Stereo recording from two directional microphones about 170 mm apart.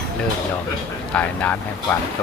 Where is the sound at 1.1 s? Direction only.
10° left (ahead or behind).